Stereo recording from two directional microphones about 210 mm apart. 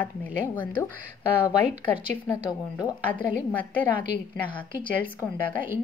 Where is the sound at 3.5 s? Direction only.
10° left (ahead or behind).